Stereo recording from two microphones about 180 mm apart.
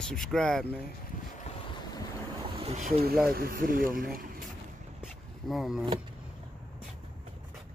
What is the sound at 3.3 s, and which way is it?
Speech, 55° right (ahead or behind).